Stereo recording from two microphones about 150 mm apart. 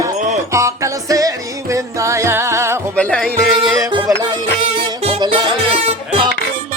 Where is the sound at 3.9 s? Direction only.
30° right (ahead or behind).